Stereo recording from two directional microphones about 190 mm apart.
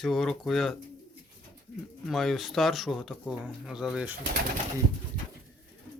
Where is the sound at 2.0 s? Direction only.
Centre (ahead or behind).